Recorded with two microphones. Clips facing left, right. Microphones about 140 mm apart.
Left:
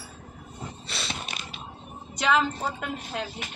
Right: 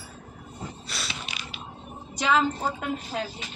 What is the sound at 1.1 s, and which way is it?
Mechanisms, 50° left (ahead or behind).